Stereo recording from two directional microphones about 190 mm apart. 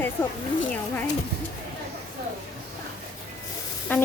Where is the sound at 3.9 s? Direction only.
10° left (ahead or behind).